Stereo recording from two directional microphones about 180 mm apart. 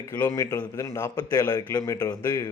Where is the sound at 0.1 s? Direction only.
20° left (ahead or behind).